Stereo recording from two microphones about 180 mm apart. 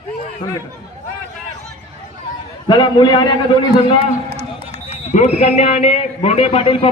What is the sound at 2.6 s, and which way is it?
Speech, 25° left (ahead or behind).